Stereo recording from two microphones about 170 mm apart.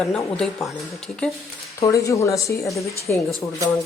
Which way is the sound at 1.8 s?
20° left (ahead or behind).